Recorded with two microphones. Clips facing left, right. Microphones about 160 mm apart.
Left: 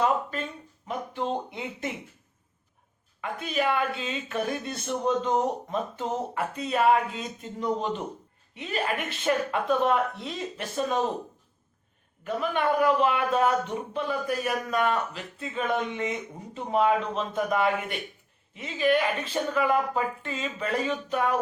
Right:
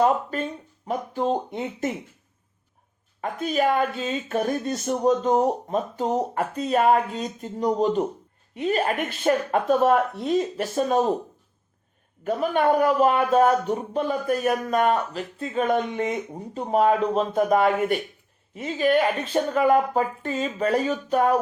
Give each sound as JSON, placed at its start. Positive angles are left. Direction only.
{"t": 0.0, "sound": "speech", "side_deg": -40}
{"t": 3.2, "sound": "speech", "side_deg": -40}
{"t": 12.2, "sound": "speech", "side_deg": -40}